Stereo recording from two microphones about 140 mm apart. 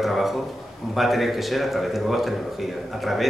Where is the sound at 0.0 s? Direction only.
Centre (ahead or behind).